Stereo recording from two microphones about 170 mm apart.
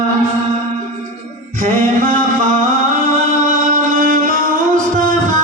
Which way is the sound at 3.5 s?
55° right (ahead or behind).